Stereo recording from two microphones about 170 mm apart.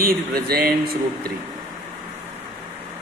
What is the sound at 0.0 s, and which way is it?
Speech, 60° right (ahead or behind).